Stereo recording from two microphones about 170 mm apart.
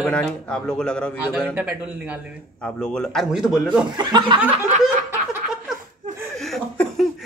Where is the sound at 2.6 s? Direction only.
5° left (ahead or behind).